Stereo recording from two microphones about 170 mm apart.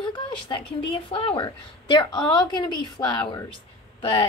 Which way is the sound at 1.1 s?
30° left (ahead or behind).